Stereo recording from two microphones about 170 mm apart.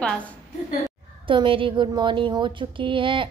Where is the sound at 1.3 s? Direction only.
30° right (ahead or behind).